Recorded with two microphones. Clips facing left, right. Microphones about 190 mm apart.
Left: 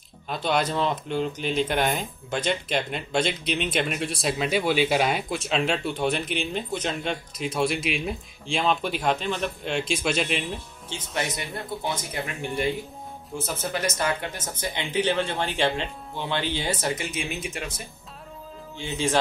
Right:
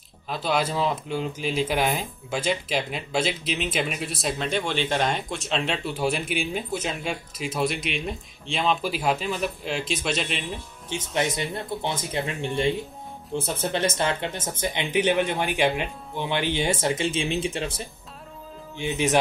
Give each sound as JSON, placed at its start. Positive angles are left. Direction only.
{"t": 0.3, "sound": "speech", "side_deg": -5}
{"t": 10.9, "sound": "speech", "side_deg": -20}
{"t": 18.8, "sound": "speech", "side_deg": -20}